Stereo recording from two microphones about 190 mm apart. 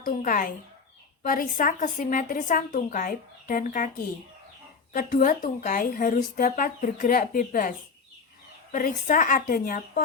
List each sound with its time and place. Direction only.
0.0 s a woman's voice: 45° left (ahead or behind)
8.7 s a woman's voice: 40° left (ahead or behind)